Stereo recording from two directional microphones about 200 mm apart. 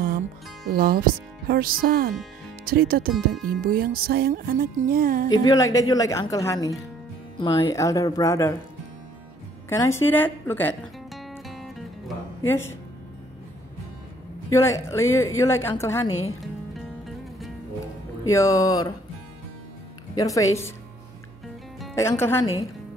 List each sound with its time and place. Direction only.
0.7 s music: 50° right (ahead or behind)
2.6 s speech: 50° right (ahead or behind)
3.1 s speech: centre (ahead or behind)
3.6 s music: 45° right (ahead or behind)
5.4 s a woman's voice: 20° left (ahead or behind)
9.7 s a woman's voice: 10° left (ahead or behind)
11.1 s music: centre (ahead or behind)
12.4 s a woman's voice: 10° left (ahead or behind)
14.5 s a woman's voice: 15° left (ahead or behind)
18.2 s a woman's voice: 15° left (ahead or behind)
20.2 s a woman's voice: 15° left (ahead or behind)
21.9 s a woman's voice: 15° left (ahead or behind)